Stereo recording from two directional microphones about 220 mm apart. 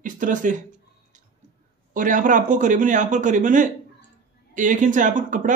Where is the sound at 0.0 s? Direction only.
35° right (ahead or behind).